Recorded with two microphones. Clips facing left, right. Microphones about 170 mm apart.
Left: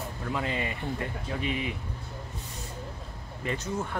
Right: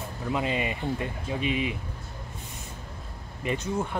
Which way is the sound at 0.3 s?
20° right (ahead or behind).